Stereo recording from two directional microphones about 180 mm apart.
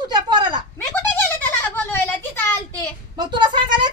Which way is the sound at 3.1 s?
25° right (ahead or behind).